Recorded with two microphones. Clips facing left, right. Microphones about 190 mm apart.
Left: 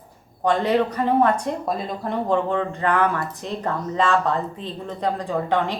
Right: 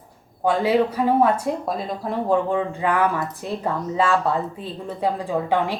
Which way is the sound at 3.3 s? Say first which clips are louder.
Right 1 dB; 15° left (ahead or behind).